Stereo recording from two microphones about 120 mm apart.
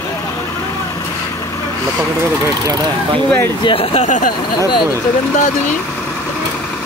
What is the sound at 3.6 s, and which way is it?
Speech, 50° left (ahead or behind).